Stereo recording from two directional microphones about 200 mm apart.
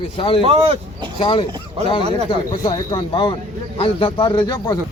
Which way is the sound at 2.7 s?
25° left (ahead or behind).